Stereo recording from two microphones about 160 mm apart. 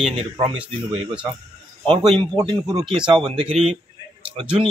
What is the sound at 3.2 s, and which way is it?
Speech, 35° right (ahead or behind).